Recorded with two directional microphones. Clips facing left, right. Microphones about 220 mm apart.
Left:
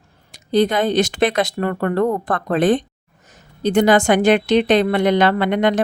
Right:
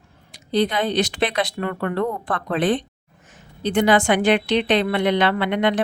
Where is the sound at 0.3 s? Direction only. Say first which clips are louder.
Left 4 dB; 45° left (ahead or behind).